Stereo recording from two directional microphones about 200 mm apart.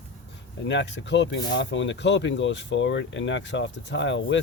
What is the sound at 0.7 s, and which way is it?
Speech, 60° left (ahead or behind).